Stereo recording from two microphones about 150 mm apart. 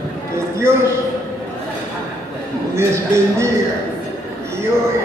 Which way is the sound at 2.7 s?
20° right (ahead or behind).